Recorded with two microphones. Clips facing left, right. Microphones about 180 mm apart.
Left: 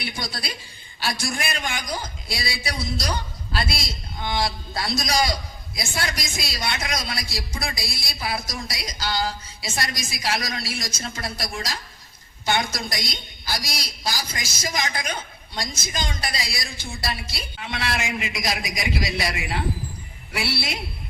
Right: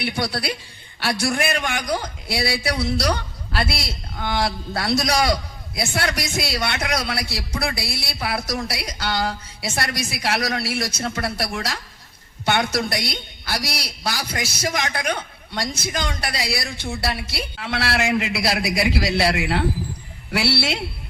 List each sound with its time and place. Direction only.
0.0 s a man's voice: 65° right (ahead or behind)